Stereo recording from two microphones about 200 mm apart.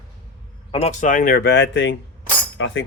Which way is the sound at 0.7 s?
35° left (ahead or behind).